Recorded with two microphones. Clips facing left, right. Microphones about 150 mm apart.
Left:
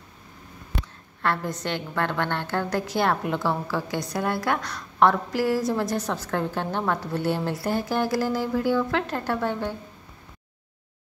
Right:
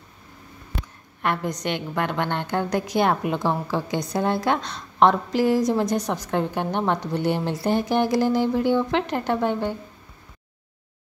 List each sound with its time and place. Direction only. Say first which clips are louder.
1.2 s a woman's voice: right 2 dB; 15° right (ahead or behind)